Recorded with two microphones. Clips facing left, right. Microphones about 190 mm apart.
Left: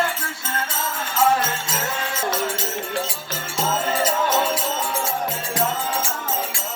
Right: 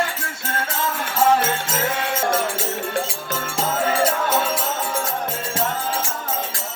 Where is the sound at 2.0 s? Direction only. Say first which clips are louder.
Right 4 dB; 65° right (ahead or behind).